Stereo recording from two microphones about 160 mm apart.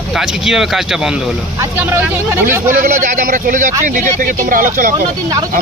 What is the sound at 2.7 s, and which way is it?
Speech, 55° right (ahead or behind).